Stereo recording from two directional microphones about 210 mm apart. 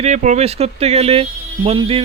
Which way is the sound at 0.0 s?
35° right (ahead or behind).